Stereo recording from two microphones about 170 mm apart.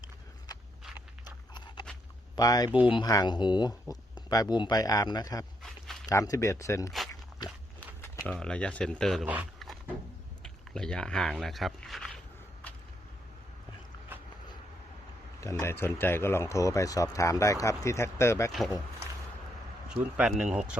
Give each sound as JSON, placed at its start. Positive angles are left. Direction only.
{"t": 0.9, "sound": "a sound", "side_deg": 25}
{"t": 2.3, "sound": "speech", "side_deg": 20}
{"t": 5.6, "sound": "dog", "side_deg": 0}
{"t": 6.1, "sound": "speech", "side_deg": 20}
{"t": 7.1, "sound": "biting", "side_deg": 25}
{"t": 7.8, "sound": "a sound", "side_deg": 15}
{"t": 8.3, "sound": "speech", "side_deg": 5}
{"t": 9.2, "sound": "speech", "side_deg": -10}
{"t": 10.4, "sound": "a sound", "side_deg": 5}
{"t": 15.4, "sound": "speech", "side_deg": 15}
{"t": 19.9, "sound": "speech", "side_deg": -5}